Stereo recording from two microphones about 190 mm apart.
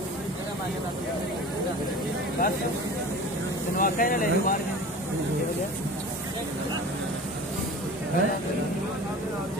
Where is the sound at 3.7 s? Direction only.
45° left (ahead or behind).